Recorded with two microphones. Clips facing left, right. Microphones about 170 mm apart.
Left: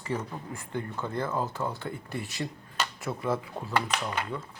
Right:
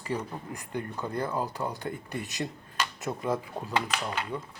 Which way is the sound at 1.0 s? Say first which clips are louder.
Right 1 dB; 40° right (ahead or behind).